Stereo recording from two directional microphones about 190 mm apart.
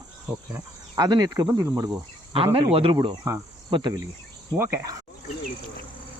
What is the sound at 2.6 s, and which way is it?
Speech, 30° right (ahead or behind).